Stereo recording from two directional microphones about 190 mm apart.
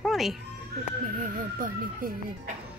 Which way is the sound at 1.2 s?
45° right (ahead or behind).